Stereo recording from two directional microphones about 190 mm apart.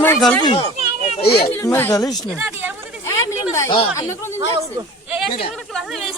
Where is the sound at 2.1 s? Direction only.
10° right (ahead or behind).